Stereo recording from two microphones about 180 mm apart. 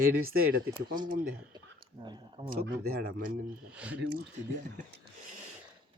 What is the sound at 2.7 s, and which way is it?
Speech, 60° right (ahead or behind).